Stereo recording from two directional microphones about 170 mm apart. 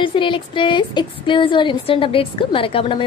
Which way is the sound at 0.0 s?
30° left (ahead or behind).